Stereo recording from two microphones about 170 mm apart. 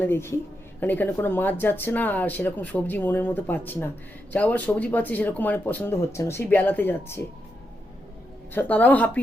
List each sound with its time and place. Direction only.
0.0 s speech: 15° left (ahead or behind)
8.5 s speech: 10° left (ahead or behind)